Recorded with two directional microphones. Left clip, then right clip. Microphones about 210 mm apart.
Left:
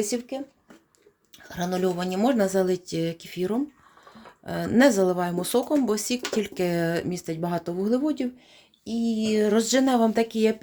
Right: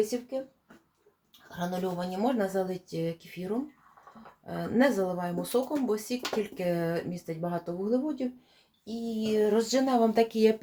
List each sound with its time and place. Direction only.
0.0 s speech: 55° left (ahead or behind)
1.5 s speech: 55° left (ahead or behind)
9.2 s speech: 45° left (ahead or behind); by 10.6 s 20° left (ahead or behind)